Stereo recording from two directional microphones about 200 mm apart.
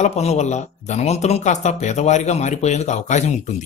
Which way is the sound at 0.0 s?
30° left (ahead or behind).